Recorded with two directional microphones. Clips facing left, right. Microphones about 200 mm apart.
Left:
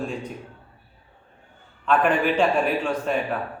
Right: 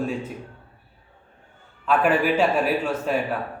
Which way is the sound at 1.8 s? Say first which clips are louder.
Even; 5° right (ahead or behind).